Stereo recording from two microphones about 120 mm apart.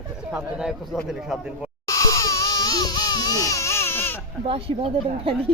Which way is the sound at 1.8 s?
30° left (ahead or behind).